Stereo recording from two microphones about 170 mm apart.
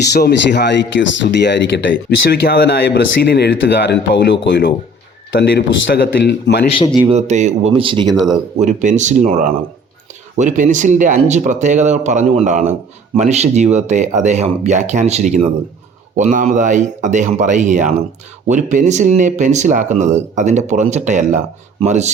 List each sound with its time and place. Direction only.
0.1 s speech: 75° left (ahead or behind)
5.4 s speech: 75° left (ahead or behind)
6.7 s a man's voice: 30° left (ahead or behind)
7.1 s speech: 40° right (ahead or behind)
7.7 s speech: 30° right (ahead or behind)
8.0 s speech: centre (ahead or behind)
8.6 s speech: 45° right (ahead or behind)